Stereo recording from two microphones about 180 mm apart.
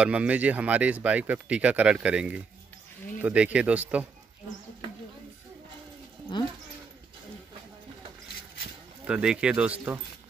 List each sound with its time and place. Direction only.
0.0 s speech: 5° right (ahead or behind)
6.3 s speech: 25° left (ahead or behind)
9.0 s speech: 5° right (ahead or behind)